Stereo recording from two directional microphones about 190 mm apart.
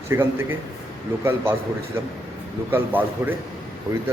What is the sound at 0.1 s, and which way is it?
A man's voice, 10° right (ahead or behind).